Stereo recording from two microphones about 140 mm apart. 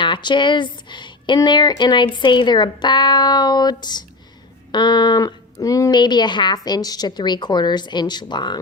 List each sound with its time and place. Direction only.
0.0 s speech: 35° left (ahead or behind)